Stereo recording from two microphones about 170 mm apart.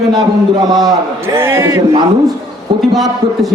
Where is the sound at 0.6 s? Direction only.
25° right (ahead or behind).